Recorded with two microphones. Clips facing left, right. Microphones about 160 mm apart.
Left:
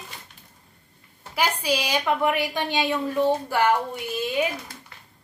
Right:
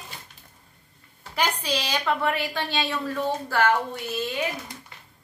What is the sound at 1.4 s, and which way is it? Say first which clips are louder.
A woman's voice: left 2 dB; 10° left (ahead or behind).